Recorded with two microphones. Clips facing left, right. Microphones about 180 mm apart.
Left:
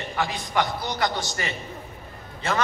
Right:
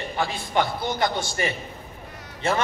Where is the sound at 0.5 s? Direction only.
25° right (ahead or behind).